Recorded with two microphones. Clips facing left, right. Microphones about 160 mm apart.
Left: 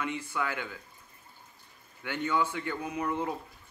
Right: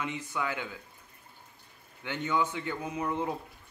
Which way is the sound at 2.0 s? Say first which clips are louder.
Even; 20° right (ahead or behind).